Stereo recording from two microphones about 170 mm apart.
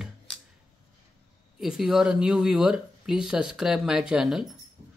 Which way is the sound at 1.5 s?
5° right (ahead or behind).